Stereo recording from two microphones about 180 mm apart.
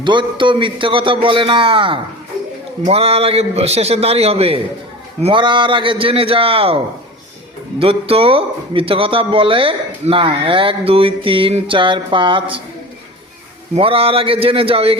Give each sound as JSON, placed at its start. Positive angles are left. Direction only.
{"t": 0.0, "sound": "a man's voice", "side_deg": -25}
{"t": 7.8, "sound": "a man's voice", "side_deg": -30}
{"t": 13.7, "sound": "a man's voice", "side_deg": -30}